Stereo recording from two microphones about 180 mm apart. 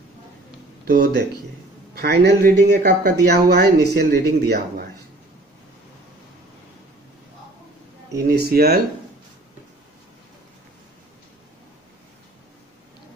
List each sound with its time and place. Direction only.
0.8 s speech: 65° right (ahead or behind)
8.2 s speech: 65° right (ahead or behind)